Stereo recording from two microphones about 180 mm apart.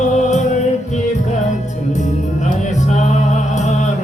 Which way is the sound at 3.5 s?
40° left (ahead or behind).